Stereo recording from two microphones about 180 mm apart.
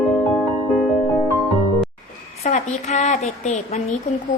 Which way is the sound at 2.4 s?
45° left (ahead or behind).